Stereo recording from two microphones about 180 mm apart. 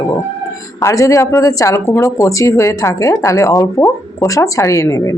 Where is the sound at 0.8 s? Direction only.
15° left (ahead or behind).